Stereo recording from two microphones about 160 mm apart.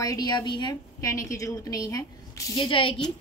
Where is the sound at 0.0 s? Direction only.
25° left (ahead or behind).